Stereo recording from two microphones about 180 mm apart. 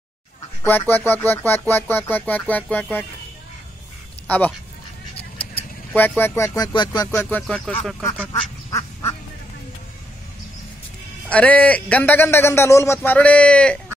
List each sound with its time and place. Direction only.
0.7 s a man's voice: 10° left (ahead or behind)
4.3 s a man's voice: 10° left (ahead or behind)
5.9 s a man's voice: 10° left (ahead or behind)
7.2 s speech: 5° left (ahead or behind)
8.0 s duck: 15° left (ahead or behind)
11.2 s a man's voice: 10° left (ahead or behind)